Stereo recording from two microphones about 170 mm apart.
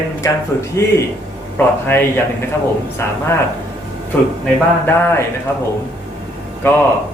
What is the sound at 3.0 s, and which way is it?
Speech, 15° left (ahead or behind).